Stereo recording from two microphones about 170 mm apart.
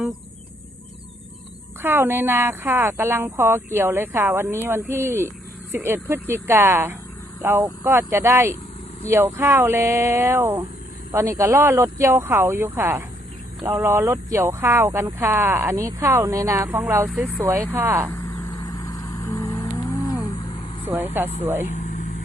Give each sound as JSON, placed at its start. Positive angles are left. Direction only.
{"t": 1.8, "sound": "speech", "side_deg": -10}
{"t": 17.1, "sound": "speech", "side_deg": 0}
{"t": 17.4, "sound": "speech", "side_deg": -10}
{"t": 18.3, "sound": "livestock", "side_deg": 20}
{"t": 20.8, "sound": "speech", "side_deg": -10}
{"t": 21.7, "sound": "vehicle", "side_deg": 45}